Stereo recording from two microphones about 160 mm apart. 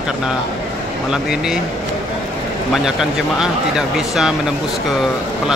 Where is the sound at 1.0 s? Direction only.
5° right (ahead or behind).